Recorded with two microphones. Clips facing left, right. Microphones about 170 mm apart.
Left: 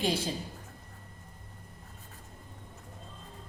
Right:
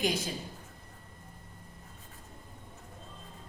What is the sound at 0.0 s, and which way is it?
Speech, 30° left (ahead or behind).